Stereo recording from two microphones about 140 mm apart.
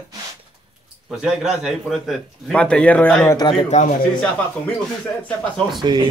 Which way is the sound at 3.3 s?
30° left (ahead or behind).